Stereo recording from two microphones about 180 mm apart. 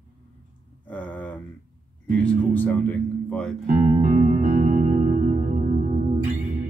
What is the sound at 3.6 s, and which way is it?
Music, 45° right (ahead or behind).